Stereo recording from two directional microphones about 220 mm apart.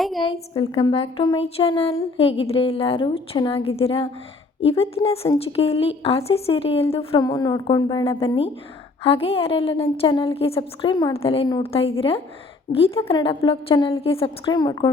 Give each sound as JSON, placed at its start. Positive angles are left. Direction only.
{"t": 0.0, "sound": "a woman's voice", "side_deg": 0}
{"t": 0.3, "sound": "a woman's voice", "side_deg": 25}